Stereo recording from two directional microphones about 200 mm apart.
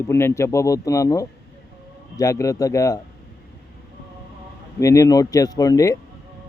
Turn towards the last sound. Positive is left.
turn(degrees=15)  # may be behind; listen again after turning